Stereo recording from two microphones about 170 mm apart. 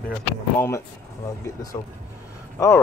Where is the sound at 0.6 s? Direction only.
15° left (ahead or behind).